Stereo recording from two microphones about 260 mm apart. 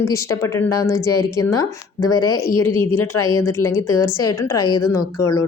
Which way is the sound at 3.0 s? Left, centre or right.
Left.